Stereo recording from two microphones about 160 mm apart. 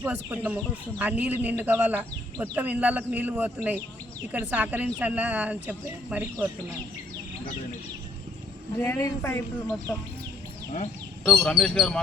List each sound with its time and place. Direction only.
0.0 s speech: 10° right (ahead or behind)
9.0 s a man's voice: 15° left (ahead or behind)
11.3 s speech: 5° left (ahead or behind)